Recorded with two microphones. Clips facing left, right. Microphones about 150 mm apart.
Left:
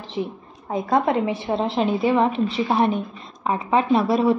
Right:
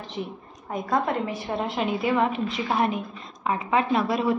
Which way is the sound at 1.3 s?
30° left (ahead or behind).